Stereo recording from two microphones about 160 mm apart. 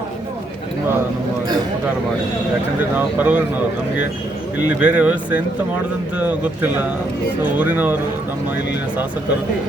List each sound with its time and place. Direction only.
2.9 s speech: 10° right (ahead or behind)
4.8 s speech: 10° right (ahead or behind)